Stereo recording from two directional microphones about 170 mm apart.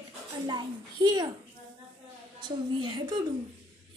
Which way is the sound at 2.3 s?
25° right (ahead or behind).